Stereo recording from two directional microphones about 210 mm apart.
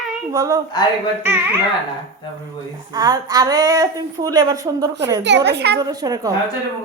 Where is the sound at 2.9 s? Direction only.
20° right (ahead or behind).